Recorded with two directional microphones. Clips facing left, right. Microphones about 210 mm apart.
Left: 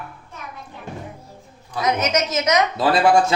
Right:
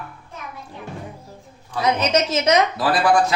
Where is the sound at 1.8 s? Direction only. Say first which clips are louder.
Right 1 dB; 30° right (ahead or behind).